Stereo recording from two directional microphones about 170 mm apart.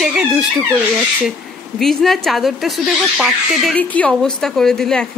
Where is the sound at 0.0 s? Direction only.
5° right (ahead or behind).